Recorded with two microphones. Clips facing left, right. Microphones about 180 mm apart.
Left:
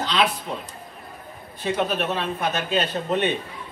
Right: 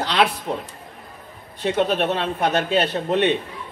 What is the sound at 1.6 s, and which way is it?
A man's voice, 65° right (ahead or behind).